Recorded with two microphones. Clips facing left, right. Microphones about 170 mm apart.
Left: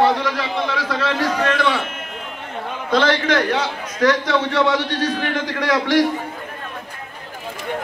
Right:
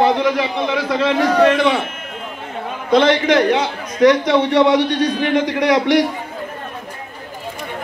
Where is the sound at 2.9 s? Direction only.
20° right (ahead or behind).